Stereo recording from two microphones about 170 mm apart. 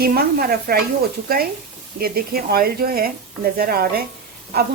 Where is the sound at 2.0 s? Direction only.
60° right (ahead or behind).